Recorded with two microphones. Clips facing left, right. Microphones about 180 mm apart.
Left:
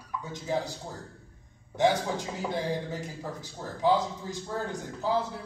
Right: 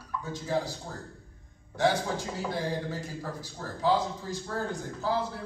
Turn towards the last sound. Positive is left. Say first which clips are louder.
# left 1 dB
turn(degrees=15)  # may be behind; listen again after turning